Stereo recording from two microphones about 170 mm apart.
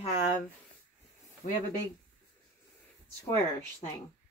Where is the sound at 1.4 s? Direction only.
50° left (ahead or behind).